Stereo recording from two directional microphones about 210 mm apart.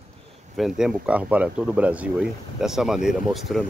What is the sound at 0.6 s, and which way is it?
Speech, centre (ahead or behind).